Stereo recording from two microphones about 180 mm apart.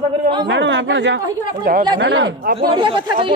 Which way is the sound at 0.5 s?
85° right.